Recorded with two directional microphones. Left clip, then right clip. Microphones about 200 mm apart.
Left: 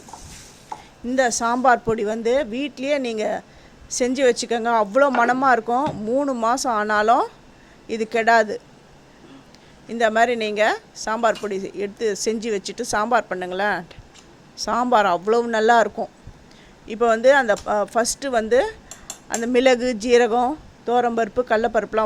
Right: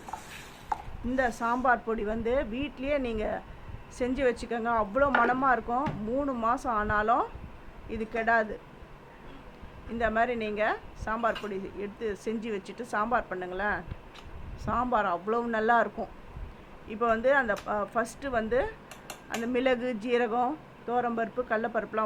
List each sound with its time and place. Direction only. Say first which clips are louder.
1.4 s a woman's voice: left 8 dB; 40° left (ahead or behind)
9.9 s a woman's voice: left 9 dB; 40° left (ahead or behind)